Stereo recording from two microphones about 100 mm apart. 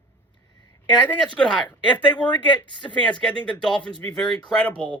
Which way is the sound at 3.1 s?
10° left (ahead or behind).